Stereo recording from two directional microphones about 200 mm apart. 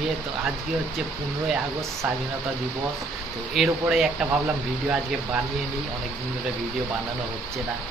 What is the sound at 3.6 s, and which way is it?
Speech, centre (ahead or behind).